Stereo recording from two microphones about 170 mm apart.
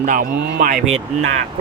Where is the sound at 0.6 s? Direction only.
50° right (ahead or behind).